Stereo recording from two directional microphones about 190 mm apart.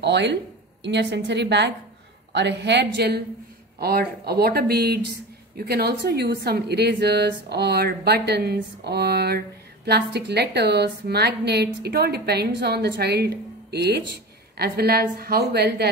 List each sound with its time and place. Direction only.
0.0 s a woman's voice: 65° right (ahead or behind)
4.3 s a woman's voice: 55° right (ahead or behind)